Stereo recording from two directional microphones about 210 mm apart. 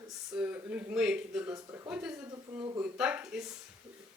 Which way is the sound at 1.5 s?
15° right (ahead or behind).